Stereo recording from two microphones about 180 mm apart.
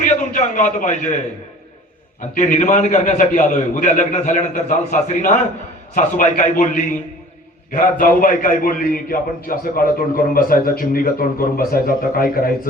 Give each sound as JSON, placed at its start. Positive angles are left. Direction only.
{"t": 0.3, "sound": "a man's voice", "side_deg": 40}
{"t": 2.3, "sound": "a man's voice", "side_deg": 40}